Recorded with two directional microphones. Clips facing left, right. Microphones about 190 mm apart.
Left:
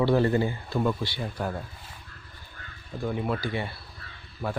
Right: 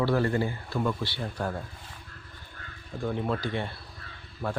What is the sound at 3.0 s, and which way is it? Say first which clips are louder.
A man's voice: left 1 dB; 5° left (ahead or behind).